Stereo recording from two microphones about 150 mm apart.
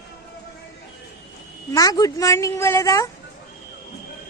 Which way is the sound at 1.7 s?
25° left (ahead or behind).